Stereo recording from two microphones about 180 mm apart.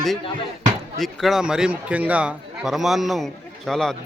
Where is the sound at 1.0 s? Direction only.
Centre (ahead or behind).